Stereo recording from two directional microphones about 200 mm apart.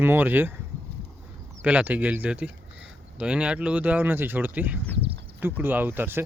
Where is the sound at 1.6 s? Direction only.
5° right (ahead or behind).